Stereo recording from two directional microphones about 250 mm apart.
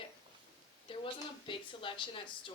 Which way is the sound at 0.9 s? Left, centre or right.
Centre.